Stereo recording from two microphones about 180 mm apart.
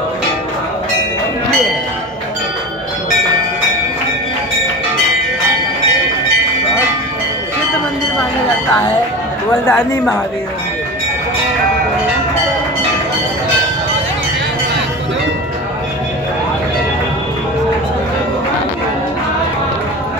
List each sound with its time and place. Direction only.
9.7 s speech: 5° left (ahead or behind)